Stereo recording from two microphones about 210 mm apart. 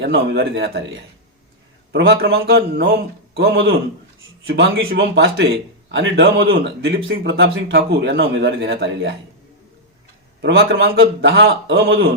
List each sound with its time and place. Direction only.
0.0 s speech: 50° right (ahead or behind)
10.4 s speech: 60° right (ahead or behind)